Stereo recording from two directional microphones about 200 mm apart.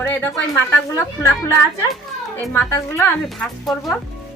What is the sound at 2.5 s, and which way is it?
Speech, 15° left (ahead or behind).